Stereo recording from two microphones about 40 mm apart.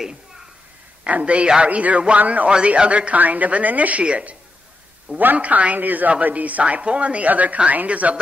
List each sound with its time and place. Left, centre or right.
1.0 s a woman's voice: right
2.5 s a woman's voice: right
5.2 s a woman's voice: right
5.8 s a woman's voice: right